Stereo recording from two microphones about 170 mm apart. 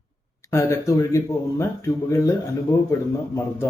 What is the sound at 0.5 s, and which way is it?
Speech, 15° left (ahead or behind).